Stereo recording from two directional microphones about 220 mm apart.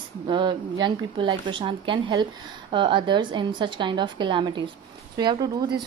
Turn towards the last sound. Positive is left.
turn(degrees=-20)  # may be behind; listen again after turning